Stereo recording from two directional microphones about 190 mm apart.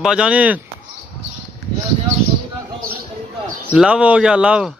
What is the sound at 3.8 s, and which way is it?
Speech, 5° right (ahead or behind).